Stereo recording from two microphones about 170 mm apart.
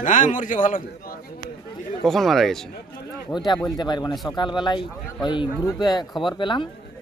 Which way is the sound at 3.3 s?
25° left (ahead or behind).